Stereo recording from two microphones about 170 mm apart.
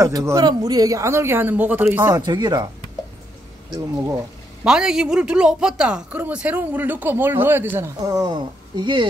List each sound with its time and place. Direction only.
0.0 s speech: 20° right (ahead or behind)
3.7 s speech: 20° right (ahead or behind)
4.6 s speech: 5° right (ahead or behind); by 9.0 s 25° right (ahead or behind)